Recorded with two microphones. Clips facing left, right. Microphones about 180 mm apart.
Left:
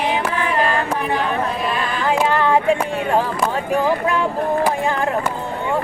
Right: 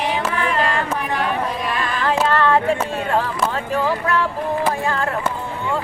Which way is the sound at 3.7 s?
15° left (ahead or behind).